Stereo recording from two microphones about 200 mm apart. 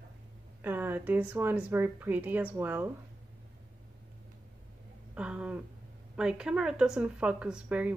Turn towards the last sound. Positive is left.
turn(degrees=-5)  # may be behind; listen again after turning